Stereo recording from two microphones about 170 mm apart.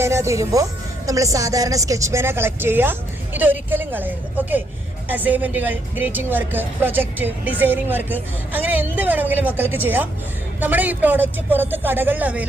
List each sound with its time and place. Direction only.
0.0 s speech: 15° right (ahead or behind)